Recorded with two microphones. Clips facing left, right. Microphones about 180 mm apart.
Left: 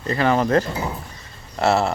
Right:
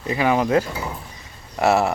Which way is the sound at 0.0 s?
10° right (ahead or behind).